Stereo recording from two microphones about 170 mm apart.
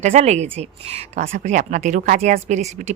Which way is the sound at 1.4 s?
45° right (ahead or behind).